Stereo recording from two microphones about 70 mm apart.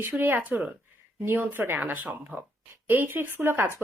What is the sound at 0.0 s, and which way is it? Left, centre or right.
A woman's voice, right.